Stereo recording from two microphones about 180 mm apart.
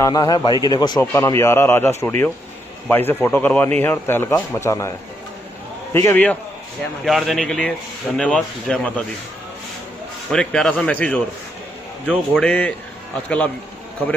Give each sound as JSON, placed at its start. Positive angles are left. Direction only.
{"t": 0.0, "sound": "a man's voice", "side_deg": 20}
{"t": 5.9, "sound": "speech", "side_deg": 10}
{"t": 7.1, "sound": "speech", "side_deg": 0}
{"t": 10.3, "sound": "speech", "side_deg": 5}